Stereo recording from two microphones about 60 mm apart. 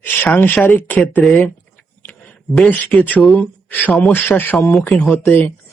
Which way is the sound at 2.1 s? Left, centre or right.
Left.